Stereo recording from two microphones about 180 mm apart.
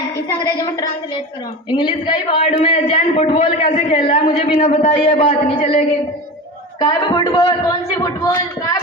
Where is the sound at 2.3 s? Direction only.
30° left (ahead or behind).